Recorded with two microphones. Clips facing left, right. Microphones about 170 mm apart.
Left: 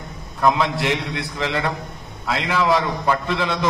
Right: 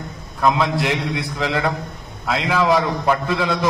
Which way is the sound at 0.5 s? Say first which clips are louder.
Right 1 dB; 20° right (ahead or behind).